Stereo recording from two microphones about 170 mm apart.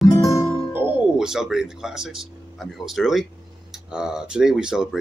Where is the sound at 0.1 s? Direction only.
20° left (ahead or behind).